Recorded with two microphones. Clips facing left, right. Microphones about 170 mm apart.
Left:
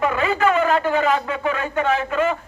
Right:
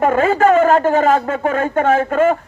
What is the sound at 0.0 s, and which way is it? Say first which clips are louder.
Speech: right 6 dB; 45° right (ahead or behind).